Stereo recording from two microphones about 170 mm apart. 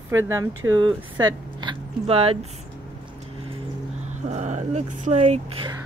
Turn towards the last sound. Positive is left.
turn(degrees=-35)  # may be behind; listen again after turning